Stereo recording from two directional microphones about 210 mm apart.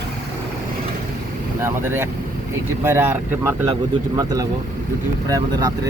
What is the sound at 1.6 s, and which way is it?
Speech, 10° right (ahead or behind).